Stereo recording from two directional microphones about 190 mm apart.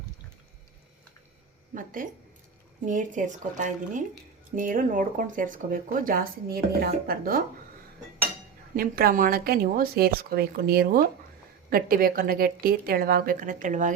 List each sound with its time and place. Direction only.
1.7 s speech: 45° right (ahead or behind)
8.7 s speech: 50° right (ahead or behind)